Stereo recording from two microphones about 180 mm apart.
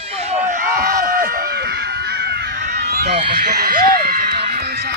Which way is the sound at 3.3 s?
60° right (ahead or behind).